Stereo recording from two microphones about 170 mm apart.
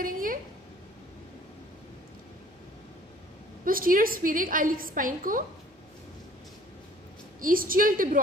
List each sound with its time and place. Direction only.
0.0 s a sound: 55° right (ahead or behind)
3.6 s a woman's voice: 55° right (ahead or behind)
7.3 s a woman's voice: 55° right (ahead or behind)